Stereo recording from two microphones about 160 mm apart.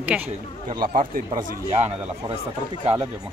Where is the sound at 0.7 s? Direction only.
65° right (ahead or behind).